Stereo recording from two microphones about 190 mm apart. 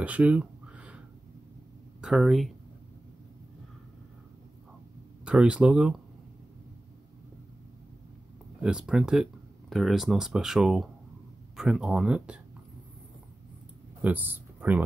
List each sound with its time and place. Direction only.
0.0 s a sound: 5° right (ahead or behind)
2.0 s speech: 5° right (ahead or behind)
5.2 s speech: 5° right (ahead or behind)
8.6 s speech: 5° right (ahead or behind)
14.0 s speech: 10° right (ahead or behind)